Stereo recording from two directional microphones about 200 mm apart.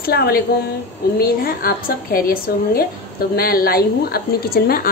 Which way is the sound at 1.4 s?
45° left (ahead or behind).